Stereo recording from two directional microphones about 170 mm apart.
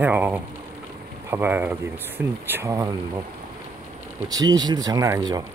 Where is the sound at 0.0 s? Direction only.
10° right (ahead or behind).